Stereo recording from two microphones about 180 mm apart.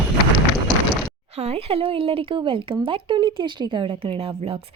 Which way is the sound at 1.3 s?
35° right (ahead or behind).